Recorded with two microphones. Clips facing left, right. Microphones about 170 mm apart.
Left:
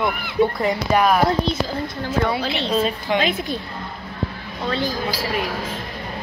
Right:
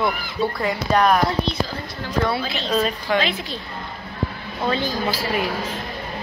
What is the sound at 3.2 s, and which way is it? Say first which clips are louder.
Speech: left 4 dB; 50° left (ahead or behind).